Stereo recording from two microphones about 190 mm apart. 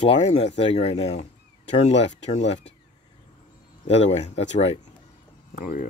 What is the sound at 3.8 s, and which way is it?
Speech, 35° left (ahead or behind).